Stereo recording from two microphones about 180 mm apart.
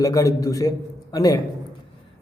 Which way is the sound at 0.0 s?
20° left (ahead or behind).